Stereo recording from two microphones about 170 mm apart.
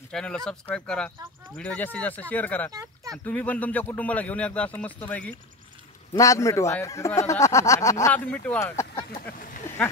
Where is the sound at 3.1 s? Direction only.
10° left (ahead or behind).